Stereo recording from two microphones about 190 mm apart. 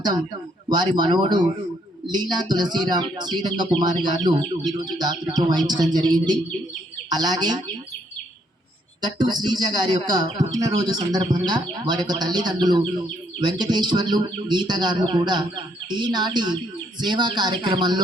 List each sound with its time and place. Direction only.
0.7 s speech: 20° right (ahead or behind)
7.1 s speech: 20° right (ahead or behind)
9.0 s speech: 20° right (ahead or behind)